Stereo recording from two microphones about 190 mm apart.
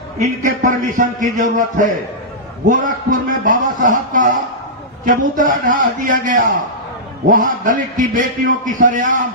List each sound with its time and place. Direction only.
0.2 s a man's voice: 45° right (ahead or behind)